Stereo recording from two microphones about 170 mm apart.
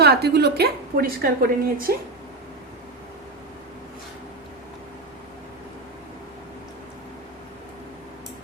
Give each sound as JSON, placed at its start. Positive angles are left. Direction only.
{"t": 0.0, "sound": "a woman's voice", "side_deg": -70}